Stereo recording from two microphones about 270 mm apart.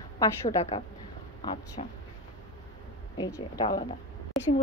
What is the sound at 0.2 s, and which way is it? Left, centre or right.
A woman's voice, centre.